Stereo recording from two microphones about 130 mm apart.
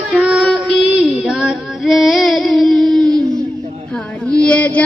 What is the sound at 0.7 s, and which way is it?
Female singing, 5° right (ahead or behind).